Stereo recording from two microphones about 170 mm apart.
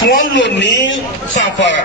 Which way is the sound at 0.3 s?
90° left.